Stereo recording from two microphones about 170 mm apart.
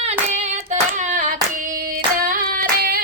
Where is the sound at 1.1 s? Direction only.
50° right (ahead or behind).